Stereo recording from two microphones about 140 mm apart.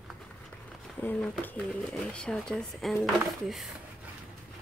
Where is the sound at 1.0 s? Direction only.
10° left (ahead or behind).